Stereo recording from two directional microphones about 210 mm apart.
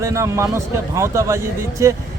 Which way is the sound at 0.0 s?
15° right (ahead or behind).